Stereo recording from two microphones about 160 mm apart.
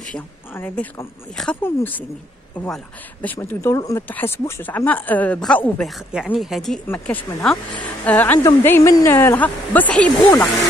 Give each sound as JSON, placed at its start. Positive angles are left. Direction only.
{"t": 0.6, "sound": "speech", "side_deg": 15}
{"t": 6.9, "sound": "speech", "side_deg": 10}